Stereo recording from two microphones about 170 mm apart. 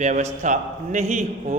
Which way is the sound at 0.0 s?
45° right (ahead or behind).